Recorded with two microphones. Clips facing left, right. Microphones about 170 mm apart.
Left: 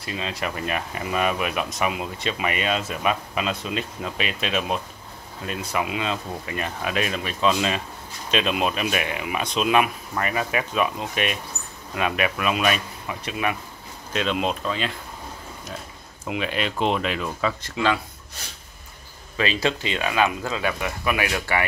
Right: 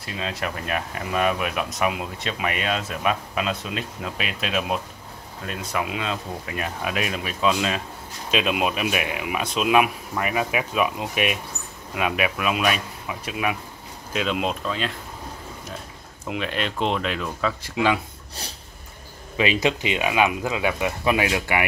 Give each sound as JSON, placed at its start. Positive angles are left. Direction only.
{"t": 0.0, "sound": "speech", "side_deg": 0}
{"t": 16.3, "sound": "speech", "side_deg": 5}
{"t": 17.6, "sound": "speech", "side_deg": -15}
{"t": 18.4, "sound": "a sound", "side_deg": -35}
{"t": 19.3, "sound": "speech", "side_deg": -15}